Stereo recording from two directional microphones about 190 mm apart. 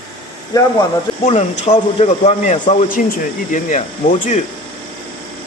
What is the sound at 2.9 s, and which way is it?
Speech, 45° left (ahead or behind).